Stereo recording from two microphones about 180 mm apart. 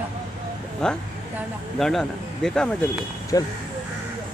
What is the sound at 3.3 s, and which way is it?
Speech, 20° left (ahead or behind).